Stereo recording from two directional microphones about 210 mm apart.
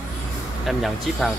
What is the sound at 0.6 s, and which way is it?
Speech, centre (ahead or behind).